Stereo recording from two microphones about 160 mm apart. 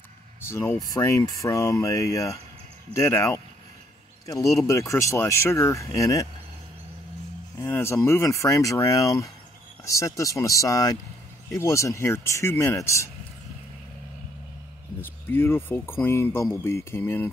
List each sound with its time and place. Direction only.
0.5 s speech: 15° left (ahead or behind)
7.5 s speech: 15° left (ahead or behind)
15.0 s speech: 15° left (ahead or behind)